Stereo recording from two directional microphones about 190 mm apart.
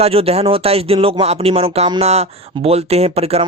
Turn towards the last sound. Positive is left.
turn(degrees=-30)  # may be behind; listen again after turning